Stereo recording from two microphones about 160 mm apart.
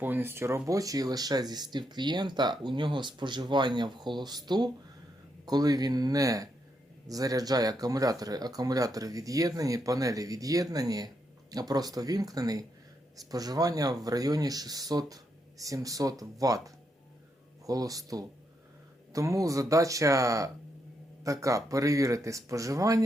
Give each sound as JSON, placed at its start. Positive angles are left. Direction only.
{"t": 0.0, "sound": "speech", "side_deg": -15}
{"t": 17.7, "sound": "speech", "side_deg": -20}